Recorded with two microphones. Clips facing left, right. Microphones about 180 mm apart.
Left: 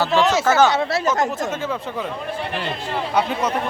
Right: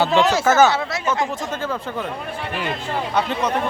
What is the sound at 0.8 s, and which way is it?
Speech, 35° left (ahead or behind).